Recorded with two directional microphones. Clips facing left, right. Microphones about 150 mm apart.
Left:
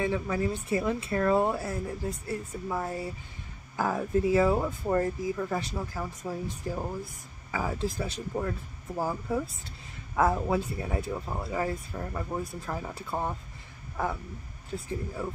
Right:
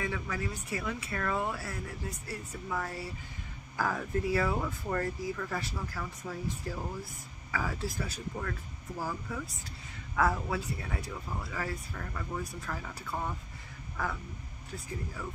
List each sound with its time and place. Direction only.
0.0 s speech: 30° left (ahead or behind)
14.7 s speech: 25° left (ahead or behind)